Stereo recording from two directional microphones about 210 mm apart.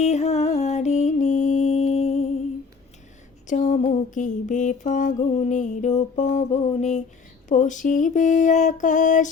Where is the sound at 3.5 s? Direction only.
35° left (ahead or behind).